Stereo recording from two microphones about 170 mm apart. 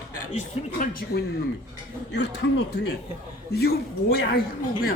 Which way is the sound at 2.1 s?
85° left.